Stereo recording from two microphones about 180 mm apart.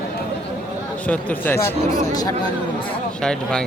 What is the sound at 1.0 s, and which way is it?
A man's voice, 10° left (ahead or behind).